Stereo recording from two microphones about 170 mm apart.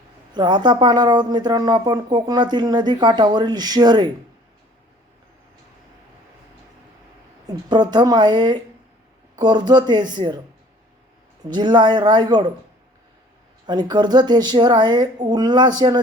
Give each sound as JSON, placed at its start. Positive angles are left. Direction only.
{"t": 0.3, "sound": "speech", "side_deg": -25}
{"t": 7.4, "sound": "speech", "side_deg": -25}
{"t": 11.4, "sound": "speech", "side_deg": -25}
{"t": 13.7, "sound": "speech", "side_deg": -25}